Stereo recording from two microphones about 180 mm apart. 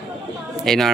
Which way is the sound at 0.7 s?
Centre (ahead or behind).